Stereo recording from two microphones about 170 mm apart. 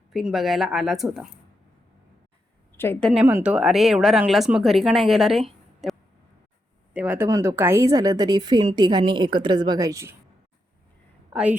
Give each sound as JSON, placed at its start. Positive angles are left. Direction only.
{"t": 0.1, "sound": "speech", "side_deg": 0}
{"t": 2.7, "sound": "a woman's voice", "side_deg": 10}
{"t": 3.1, "sound": "speech", "side_deg": -10}
{"t": 5.8, "sound": "a sound", "side_deg": 0}
{"t": 6.9, "sound": "a woman's voice", "side_deg": -10}